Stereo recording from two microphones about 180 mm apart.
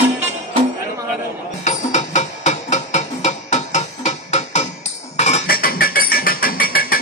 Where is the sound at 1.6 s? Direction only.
40° left (ahead or behind).